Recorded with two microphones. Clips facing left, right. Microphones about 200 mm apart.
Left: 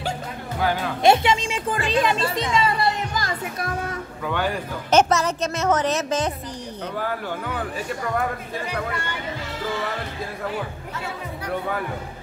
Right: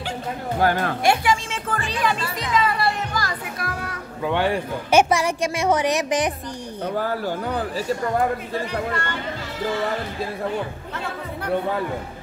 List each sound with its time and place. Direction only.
0.6 s a woman's voice: 50° right (ahead or behind)
1.0 s music: 25° left (ahead or behind)
4.2 s a man's voice: 25° right (ahead or behind)
4.9 s a woman's voice: 10° right (ahead or behind)
7.0 s speech: 35° right (ahead or behind)